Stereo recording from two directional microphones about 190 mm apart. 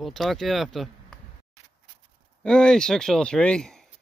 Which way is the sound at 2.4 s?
5° left (ahead or behind).